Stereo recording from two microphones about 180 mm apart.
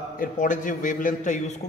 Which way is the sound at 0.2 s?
45° left (ahead or behind).